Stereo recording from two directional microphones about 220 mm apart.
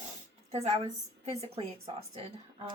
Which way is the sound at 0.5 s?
30° right (ahead or behind).